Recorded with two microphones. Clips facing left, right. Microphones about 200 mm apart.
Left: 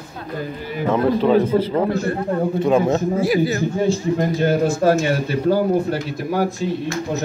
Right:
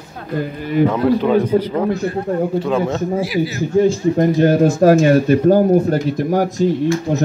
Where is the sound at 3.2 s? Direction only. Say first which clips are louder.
Left 1 dB; 50° left (ahead or behind).